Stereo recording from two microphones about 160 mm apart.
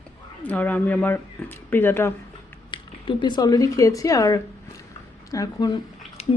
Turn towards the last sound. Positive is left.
turn(degrees=40)  # may be behind; listen again after turning